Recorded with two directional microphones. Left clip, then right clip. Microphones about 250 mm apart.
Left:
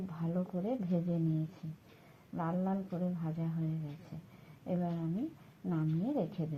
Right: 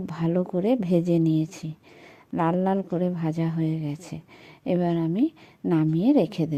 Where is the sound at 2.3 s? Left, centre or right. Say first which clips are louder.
Right 14 dB; right.